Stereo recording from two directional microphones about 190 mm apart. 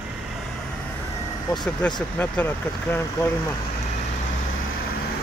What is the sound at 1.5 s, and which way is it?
Speech, 5° left (ahead or behind).